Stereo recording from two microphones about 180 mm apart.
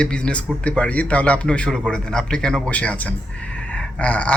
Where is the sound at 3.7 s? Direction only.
5° left (ahead or behind).